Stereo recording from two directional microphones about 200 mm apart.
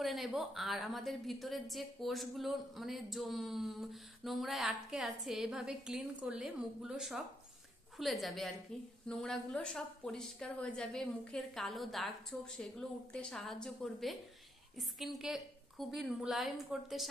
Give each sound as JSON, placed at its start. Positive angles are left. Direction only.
{"t": 0.0, "sound": "a woman's voice", "side_deg": 0}